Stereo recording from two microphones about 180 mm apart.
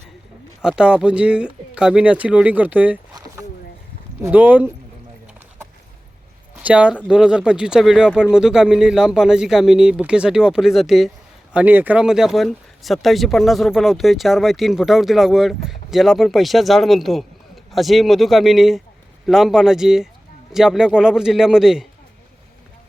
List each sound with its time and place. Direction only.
0.6 s speech: 5° right (ahead or behind)
3.1 s rowboat: 20° right (ahead or behind)
4.2 s speech: 10° right (ahead or behind)
6.6 s speech: 5° right (ahead or behind)